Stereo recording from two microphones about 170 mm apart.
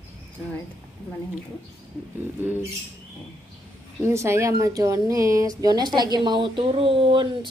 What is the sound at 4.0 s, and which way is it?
Speech, 15° right (ahead or behind).